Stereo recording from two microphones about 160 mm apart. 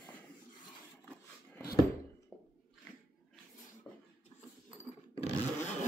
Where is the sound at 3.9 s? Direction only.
10° left (ahead or behind).